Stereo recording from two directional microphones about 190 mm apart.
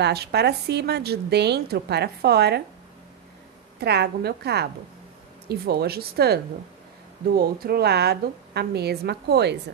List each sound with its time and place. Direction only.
0.0 s a woman's voice: 60° right (ahead or behind)
3.8 s a woman's voice: 60° right (ahead or behind)